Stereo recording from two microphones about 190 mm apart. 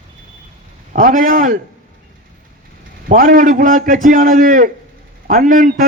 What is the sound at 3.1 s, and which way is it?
A man's voice, 45° right (ahead or behind).